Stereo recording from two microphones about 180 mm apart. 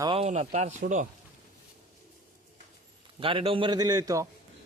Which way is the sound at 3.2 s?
30° right (ahead or behind).